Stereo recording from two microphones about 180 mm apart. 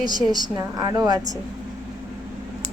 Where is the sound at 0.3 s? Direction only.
20° right (ahead or behind).